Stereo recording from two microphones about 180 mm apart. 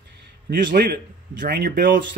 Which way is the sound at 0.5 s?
65° right (ahead or behind).